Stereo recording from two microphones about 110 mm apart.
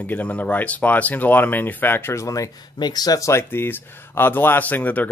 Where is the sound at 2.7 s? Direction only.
40° left (ahead or behind).